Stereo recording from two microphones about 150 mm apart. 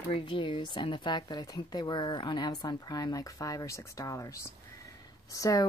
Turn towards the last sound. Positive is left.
turn(degrees=20)  # may be behind; listen again after turning